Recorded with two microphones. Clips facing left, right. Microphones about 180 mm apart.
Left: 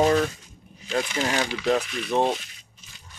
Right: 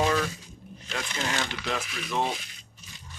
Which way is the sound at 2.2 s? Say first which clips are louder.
Left 6 dB; centre (ahead or behind).